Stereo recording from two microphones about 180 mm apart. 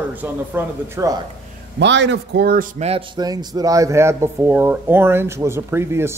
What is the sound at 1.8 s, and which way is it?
A man's voice, 80° right.